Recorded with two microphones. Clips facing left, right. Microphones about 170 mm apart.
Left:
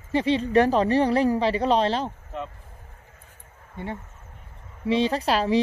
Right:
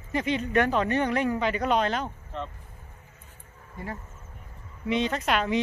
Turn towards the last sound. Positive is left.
turn(degrees=35)  # may be behind; listen again after turning